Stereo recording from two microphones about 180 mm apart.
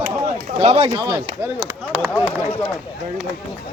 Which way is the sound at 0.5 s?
30° right (ahead or behind).